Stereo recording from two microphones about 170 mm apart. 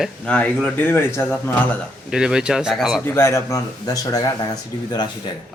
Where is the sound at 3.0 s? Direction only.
15° left (ahead or behind).